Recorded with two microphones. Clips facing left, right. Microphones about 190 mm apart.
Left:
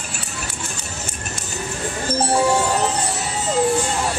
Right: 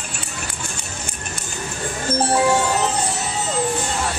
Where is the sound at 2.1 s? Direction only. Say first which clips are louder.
Right 1 dB; centre (ahead or behind).